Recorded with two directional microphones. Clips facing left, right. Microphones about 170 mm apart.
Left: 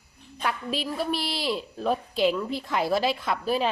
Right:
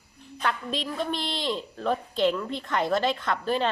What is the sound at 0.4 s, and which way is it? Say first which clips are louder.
A woman's voice: even; 5° left (ahead or behind).